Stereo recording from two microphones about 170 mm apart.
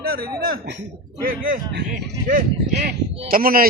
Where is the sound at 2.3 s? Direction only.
55° right (ahead or behind).